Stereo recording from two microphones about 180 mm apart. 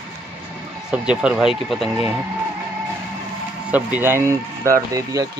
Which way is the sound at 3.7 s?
10° right (ahead or behind).